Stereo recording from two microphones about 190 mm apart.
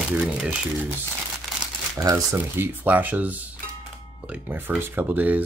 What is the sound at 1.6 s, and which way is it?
Speech, 20° right (ahead or behind).